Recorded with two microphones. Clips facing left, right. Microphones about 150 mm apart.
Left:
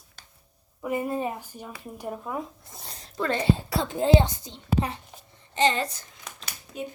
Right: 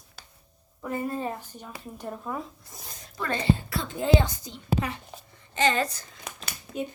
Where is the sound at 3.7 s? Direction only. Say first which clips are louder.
Left 3 dB; 30° left (ahead or behind).